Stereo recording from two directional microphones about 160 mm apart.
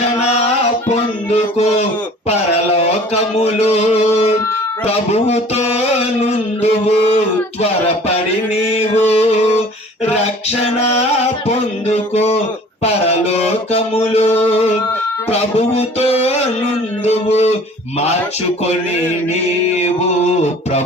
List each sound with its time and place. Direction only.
0.9 s music: 40° left (ahead or behind)
2.2 s a sound: 40° left (ahead or behind)
4.9 s speech: 40° left (ahead or behind)
8.7 s music: 40° left (ahead or behind)
10.6 s music: 40° left (ahead or behind)
11.9 s speech: 40° left (ahead or behind)
14.4 s music: 40° left (ahead or behind)
17.1 s a sound: 40° left (ahead or behind)
19.7 s a sound: 45° left (ahead or behind)